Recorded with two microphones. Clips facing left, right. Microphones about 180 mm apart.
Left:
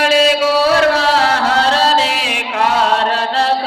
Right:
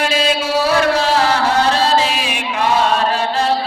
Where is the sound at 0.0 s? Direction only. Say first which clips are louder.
Left 5 dB; 80° left.